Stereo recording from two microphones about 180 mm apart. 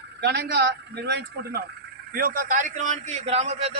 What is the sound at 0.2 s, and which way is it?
A man's voice, 65° right (ahead or behind).